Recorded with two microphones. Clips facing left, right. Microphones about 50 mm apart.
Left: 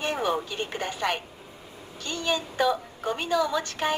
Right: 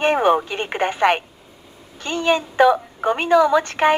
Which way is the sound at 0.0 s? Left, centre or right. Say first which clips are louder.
Right 11 dB; right.